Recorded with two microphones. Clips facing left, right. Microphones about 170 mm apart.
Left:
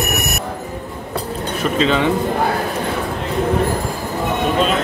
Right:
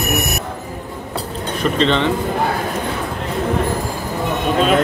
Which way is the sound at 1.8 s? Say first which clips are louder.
Even; 5° left (ahead or behind).